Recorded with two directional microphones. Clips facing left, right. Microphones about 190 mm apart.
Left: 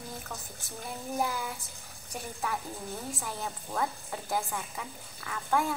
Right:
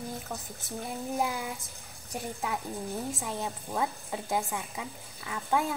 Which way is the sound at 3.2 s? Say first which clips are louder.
Right 3 dB; 20° right (ahead or behind).